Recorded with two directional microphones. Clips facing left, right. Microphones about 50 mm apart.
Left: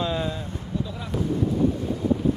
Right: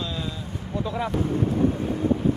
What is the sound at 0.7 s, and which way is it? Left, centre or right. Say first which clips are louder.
Speech: right 5 dB; right.